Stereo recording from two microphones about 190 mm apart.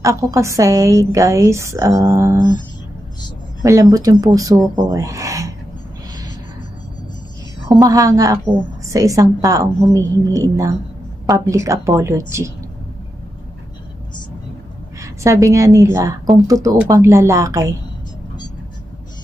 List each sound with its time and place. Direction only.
0.0 s a woman's voice: 15° right (ahead or behind)
3.6 s a woman's voice: 15° right (ahead or behind)
7.8 s a woman's voice: 20° right (ahead or behind)
15.0 s a woman's voice: 15° right (ahead or behind)